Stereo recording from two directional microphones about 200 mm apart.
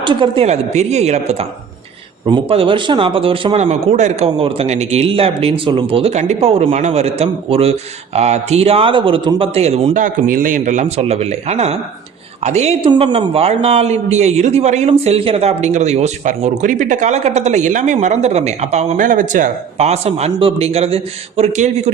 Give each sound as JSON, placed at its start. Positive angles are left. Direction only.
{"t": 0.0, "sound": "speech", "side_deg": -25}